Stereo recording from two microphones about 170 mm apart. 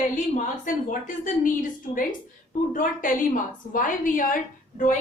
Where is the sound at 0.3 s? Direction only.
50° left (ahead or behind).